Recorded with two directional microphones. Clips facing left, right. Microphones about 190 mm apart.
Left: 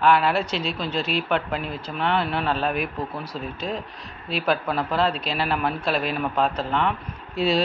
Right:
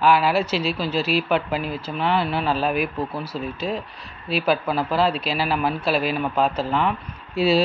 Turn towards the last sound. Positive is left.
turn(degrees=-5)  # may be behind; listen again after turning